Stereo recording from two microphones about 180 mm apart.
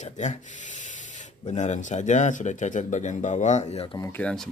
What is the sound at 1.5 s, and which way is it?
Speech, 40° left (ahead or behind).